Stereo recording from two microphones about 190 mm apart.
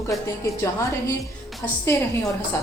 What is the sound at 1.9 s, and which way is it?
Speech, 10° left (ahead or behind).